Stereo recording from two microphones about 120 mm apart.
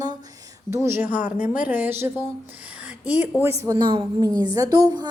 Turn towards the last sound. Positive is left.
turn(degrees=-35)  # may be behind; listen again after turning